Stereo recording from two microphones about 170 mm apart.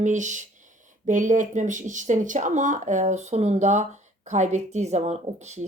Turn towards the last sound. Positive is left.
turn(degrees=-40)  # may be behind; listen again after turning